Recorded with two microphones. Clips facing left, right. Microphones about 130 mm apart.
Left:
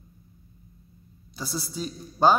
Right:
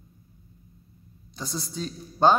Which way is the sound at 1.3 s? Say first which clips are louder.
Left 1 dB; 5° left (ahead or behind).